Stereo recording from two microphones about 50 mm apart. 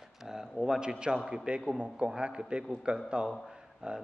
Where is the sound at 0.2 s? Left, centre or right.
Centre.